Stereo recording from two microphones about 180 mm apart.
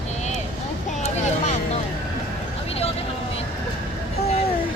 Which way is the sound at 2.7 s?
35° left (ahead or behind).